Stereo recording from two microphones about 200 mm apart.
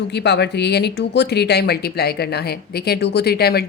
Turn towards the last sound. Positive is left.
turn(degrees=50)  # may be behind; listen again after turning